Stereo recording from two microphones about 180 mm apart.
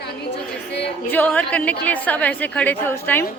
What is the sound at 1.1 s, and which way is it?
A woman's voice, 10° left (ahead or behind).